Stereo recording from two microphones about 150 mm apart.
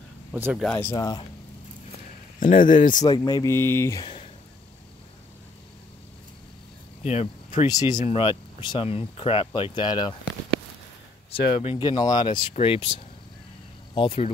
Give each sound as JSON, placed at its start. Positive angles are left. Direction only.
{"t": 0.3, "sound": "speech", "side_deg": -10}
{"t": 0.7, "sound": "speech", "side_deg": 20}
{"t": 2.4, "sound": "speech", "side_deg": 60}
{"t": 3.0, "sound": "speech", "side_deg": 25}
{"t": 4.0, "sound": "a sound", "side_deg": 35}
{"t": 7.1, "sound": "speech", "side_deg": 45}
{"t": 7.6, "sound": "speech", "side_deg": 25}
{"t": 8.0, "sound": "speech", "side_deg": 35}
{"t": 11.5, "sound": "speech", "side_deg": 35}
{"t": 13.9, "sound": "speech", "side_deg": 40}